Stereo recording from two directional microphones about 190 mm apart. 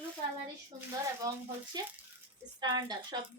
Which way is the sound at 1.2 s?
20° right (ahead or behind).